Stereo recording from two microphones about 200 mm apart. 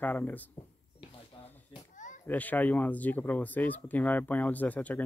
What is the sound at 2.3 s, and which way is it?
Speech, 10° left (ahead or behind).